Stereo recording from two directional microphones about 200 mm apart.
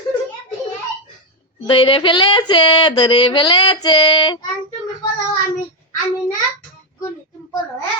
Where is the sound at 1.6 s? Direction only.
25° left (ahead or behind).